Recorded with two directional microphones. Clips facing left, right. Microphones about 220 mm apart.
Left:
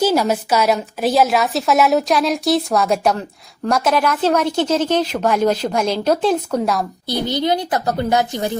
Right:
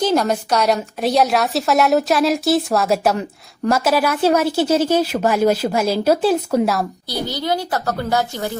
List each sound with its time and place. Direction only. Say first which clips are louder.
0.0 s a woman's voice: left 1 dB; 5° left (ahead or behind)
7.1 s a woman's voice: left 5 dB; 20° left (ahead or behind)